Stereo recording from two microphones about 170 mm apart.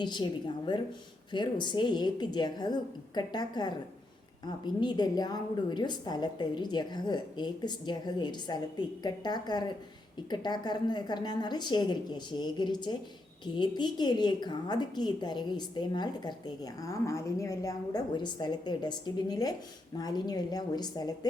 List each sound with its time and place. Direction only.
0.0 s a woman's voice: 25° left (ahead or behind)